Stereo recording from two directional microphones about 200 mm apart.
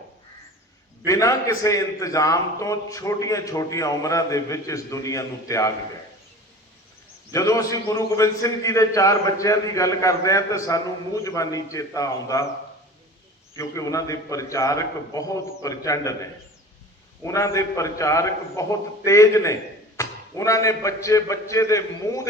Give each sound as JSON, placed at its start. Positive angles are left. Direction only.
{"t": 1.0, "sound": "a man's voice", "side_deg": 15}
{"t": 7.3, "sound": "a man's voice", "side_deg": 15}
{"t": 13.6, "sound": "a man's voice", "side_deg": 15}